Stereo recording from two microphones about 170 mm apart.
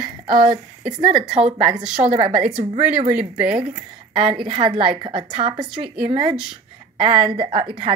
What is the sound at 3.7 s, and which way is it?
A woman's voice, 30° right (ahead or behind).